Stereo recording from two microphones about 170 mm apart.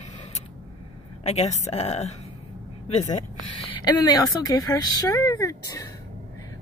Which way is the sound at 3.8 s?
25° left (ahead or behind).